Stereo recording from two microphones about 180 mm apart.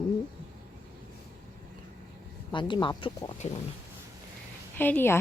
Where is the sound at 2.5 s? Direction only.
25° left (ahead or behind).